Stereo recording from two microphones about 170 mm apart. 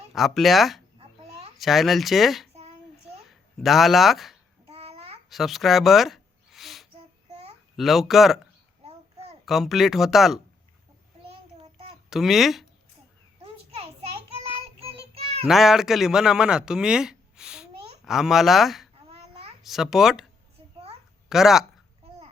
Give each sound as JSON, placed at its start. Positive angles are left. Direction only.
{"t": 0.1, "sound": "speech", "side_deg": 0}
{"t": 2.5, "sound": "child singing", "side_deg": -40}
{"t": 3.2, "sound": "speech", "side_deg": 0}
{"t": 4.7, "sound": "babbling", "side_deg": -35}
{"t": 5.3, "sound": "a sound", "side_deg": 0}
{"t": 7.8, "sound": "speech", "side_deg": 0}
{"t": 9.5, "sound": "speech", "side_deg": 0}
{"t": 12.1, "sound": "speech", "side_deg": 0}
{"t": 14.5, "sound": "child singing", "side_deg": -35}
{"t": 15.4, "sound": "a man's voice", "side_deg": 0}
{"t": 21.2, "sound": "speech", "side_deg": 0}